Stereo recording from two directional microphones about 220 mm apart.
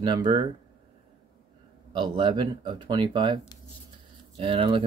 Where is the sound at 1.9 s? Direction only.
20° right (ahead or behind).